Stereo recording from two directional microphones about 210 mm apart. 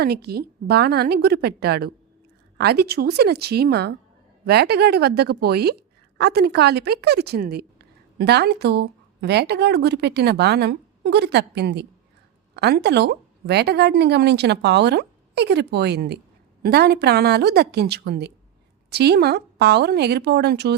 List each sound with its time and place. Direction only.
0.0 s a woman's voice: 50° right (ahead or behind)